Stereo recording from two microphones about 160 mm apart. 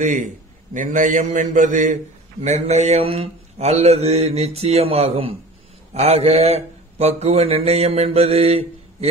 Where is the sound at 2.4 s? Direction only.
45° right (ahead or behind).